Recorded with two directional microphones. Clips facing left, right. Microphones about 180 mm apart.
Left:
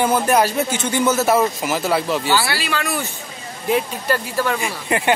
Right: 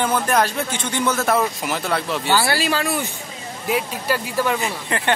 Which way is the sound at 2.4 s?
45° right (ahead or behind).